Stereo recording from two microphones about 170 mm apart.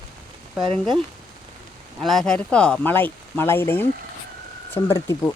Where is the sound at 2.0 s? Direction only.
Centre (ahead or behind).